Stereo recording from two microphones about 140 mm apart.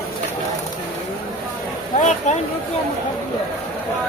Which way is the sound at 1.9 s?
60° left (ahead or behind).